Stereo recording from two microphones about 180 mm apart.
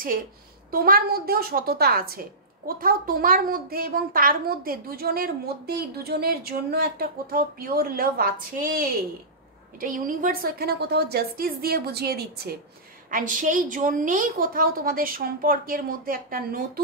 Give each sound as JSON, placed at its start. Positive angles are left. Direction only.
{"t": 0.7, "sound": "a woman's voice", "side_deg": -55}
{"t": 13.1, "sound": "a woman's voice", "side_deg": -45}